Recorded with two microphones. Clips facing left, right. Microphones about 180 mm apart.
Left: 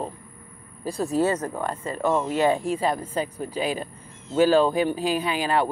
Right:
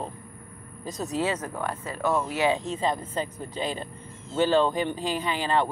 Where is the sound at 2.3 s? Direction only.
20° right (ahead or behind).